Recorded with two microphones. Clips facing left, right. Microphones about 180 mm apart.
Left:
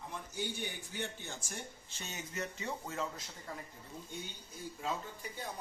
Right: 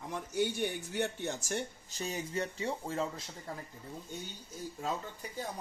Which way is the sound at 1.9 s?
35° right (ahead or behind).